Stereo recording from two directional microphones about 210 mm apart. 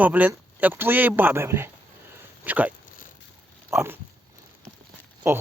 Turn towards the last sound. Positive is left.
turn(degrees=-15)  # may be behind; listen again after turning